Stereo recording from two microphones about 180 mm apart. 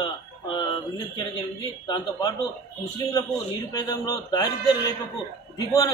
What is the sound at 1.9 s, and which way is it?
Speech, 20° left (ahead or behind).